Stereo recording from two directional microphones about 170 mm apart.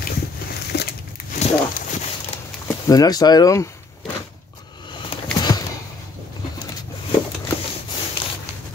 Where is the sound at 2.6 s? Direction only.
20° left (ahead or behind).